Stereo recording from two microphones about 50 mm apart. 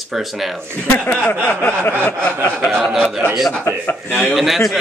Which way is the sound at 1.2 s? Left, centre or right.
Left.